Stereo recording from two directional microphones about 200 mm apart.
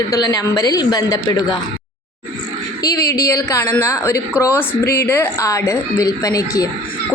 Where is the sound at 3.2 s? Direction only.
15° left (ahead or behind).